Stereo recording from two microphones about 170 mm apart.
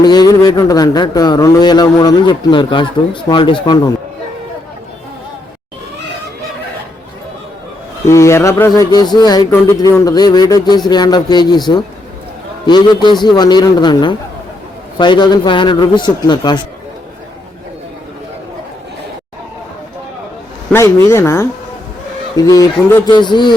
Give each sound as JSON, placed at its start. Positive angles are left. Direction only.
{"t": 0.0, "sound": "speech", "side_deg": 25}
{"t": 8.0, "sound": "speech", "side_deg": 15}
{"t": 20.7, "sound": "speech", "side_deg": 15}